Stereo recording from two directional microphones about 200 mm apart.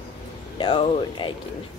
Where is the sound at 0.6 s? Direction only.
25° left (ahead or behind).